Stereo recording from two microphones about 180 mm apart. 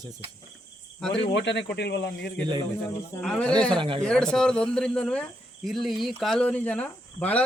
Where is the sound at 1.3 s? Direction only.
75° left (ahead or behind).